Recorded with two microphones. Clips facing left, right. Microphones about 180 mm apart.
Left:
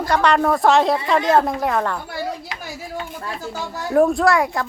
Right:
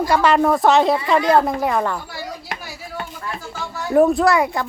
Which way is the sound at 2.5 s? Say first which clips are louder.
Right 3 dB; 50° right (ahead or behind).